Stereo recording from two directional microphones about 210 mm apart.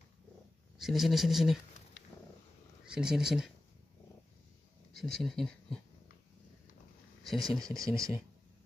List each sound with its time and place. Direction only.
0.7 s speech: centre (ahead or behind)
2.8 s speech: 5° right (ahead or behind)
4.9 s speech: centre (ahead or behind)
7.2 s speech: centre (ahead or behind)